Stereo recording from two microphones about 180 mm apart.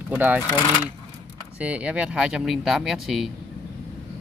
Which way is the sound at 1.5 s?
5° right (ahead or behind).